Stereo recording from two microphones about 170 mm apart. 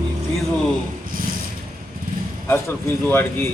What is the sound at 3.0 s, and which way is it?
Speech, 10° left (ahead or behind).